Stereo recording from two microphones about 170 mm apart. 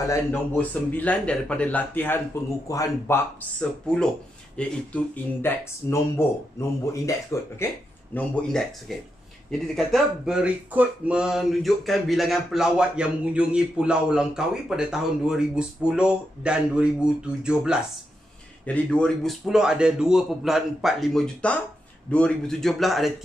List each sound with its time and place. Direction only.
0.0 s a man's voice: 15° left (ahead or behind)
8.1 s speech: 5° left (ahead or behind)
18.7 s speech: 5° left (ahead or behind)